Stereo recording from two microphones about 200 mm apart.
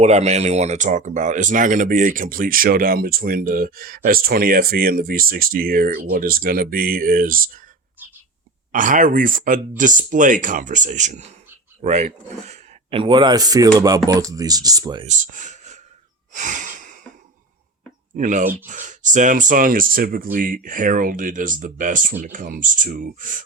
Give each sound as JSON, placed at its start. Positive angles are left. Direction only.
{"t": 0.0, "sound": "speech", "side_deg": -35}
{"t": 8.7, "sound": "speech", "side_deg": -40}
{"t": 15.0, "sound": "speech", "side_deg": -40}
{"t": 16.3, "sound": "a sound", "side_deg": -40}
{"t": 18.2, "sound": "speech", "side_deg": -40}